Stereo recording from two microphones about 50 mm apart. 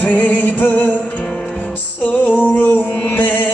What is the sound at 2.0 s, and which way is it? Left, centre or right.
Music, left.